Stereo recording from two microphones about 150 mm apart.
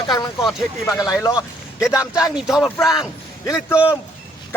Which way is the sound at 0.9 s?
25° left (ahead or behind).